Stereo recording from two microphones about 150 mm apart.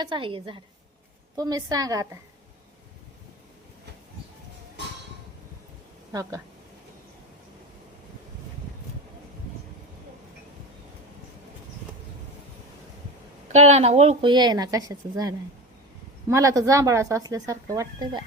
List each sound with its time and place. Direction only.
0.0 s a woman's voice: 35° right (ahead or behind)
6.1 s speech: 20° right (ahead or behind)
13.5 s a woman's voice: 50° right (ahead or behind); by 18.2 s 25° right (ahead or behind)